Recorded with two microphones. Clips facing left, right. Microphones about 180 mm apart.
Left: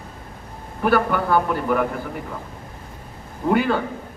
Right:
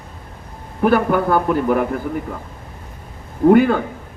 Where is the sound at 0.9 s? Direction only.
50° right (ahead or behind).